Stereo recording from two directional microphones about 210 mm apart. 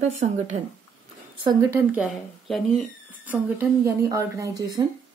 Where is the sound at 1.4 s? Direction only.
15° right (ahead or behind).